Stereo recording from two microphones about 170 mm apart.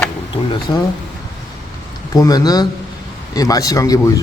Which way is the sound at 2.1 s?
20° left (ahead or behind).